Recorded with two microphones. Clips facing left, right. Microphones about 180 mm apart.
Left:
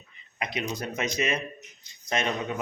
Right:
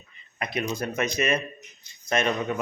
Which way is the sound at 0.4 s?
50° right (ahead or behind).